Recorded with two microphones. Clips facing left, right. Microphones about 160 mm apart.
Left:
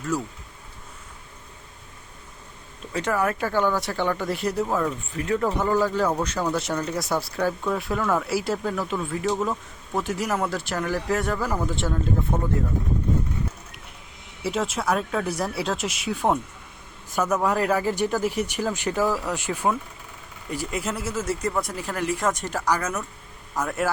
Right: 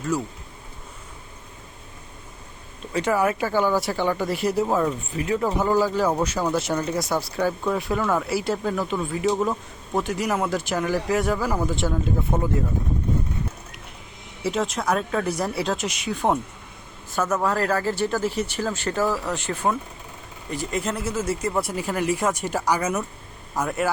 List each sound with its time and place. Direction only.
0.1 s speech: centre (ahead or behind)
2.9 s speech: 5° right (ahead or behind)
4.6 s speech: 15° right (ahead or behind)
12.3 s speech: 15° right (ahead or behind)
14.4 s speech: 5° left (ahead or behind)